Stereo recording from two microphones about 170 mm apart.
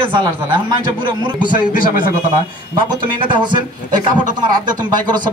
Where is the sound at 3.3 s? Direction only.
25° right (ahead or behind).